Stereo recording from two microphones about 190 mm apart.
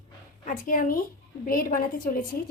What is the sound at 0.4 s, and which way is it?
A woman's voice, 45° left (ahead or behind).